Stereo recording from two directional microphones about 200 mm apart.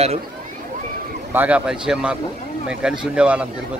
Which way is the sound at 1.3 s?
5° right (ahead or behind).